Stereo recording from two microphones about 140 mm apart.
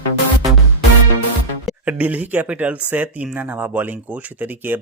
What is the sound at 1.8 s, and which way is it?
Speech, 10° right (ahead or behind).